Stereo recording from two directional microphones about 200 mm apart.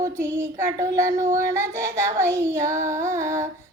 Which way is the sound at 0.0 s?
15° right (ahead or behind).